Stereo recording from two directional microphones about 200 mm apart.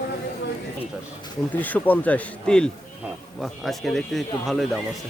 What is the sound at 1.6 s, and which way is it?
Speech, 10° left (ahead or behind).